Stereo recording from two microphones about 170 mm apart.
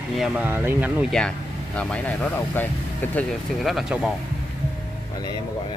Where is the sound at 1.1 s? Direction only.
5° left (ahead or behind).